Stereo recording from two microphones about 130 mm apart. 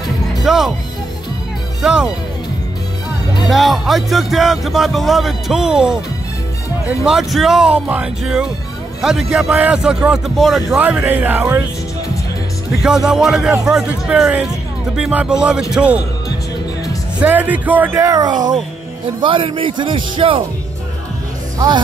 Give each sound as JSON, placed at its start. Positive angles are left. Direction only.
{"t": 0.4, "sound": "speech", "side_deg": 0}
{"t": 1.8, "sound": "speech", "side_deg": -5}
{"t": 3.4, "sound": "speech", "side_deg": 0}
{"t": 10.8, "sound": "speech", "side_deg": -15}
{"t": 12.8, "sound": "speech", "side_deg": -5}
{"t": 17.2, "sound": "a man's voice", "side_deg": -10}
{"t": 21.5, "sound": "speech", "side_deg": -35}